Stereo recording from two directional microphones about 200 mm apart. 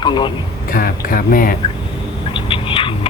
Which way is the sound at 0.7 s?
45° left (ahead or behind).